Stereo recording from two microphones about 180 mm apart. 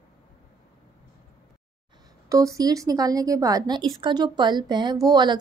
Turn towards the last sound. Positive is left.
turn(degrees=-25)  # may be behind; listen again after turning